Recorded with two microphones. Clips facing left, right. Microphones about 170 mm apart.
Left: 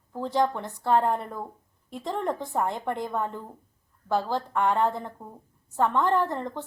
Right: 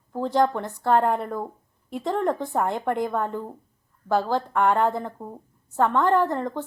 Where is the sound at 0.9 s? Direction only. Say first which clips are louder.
Right 2 dB; 65° right (ahead or behind).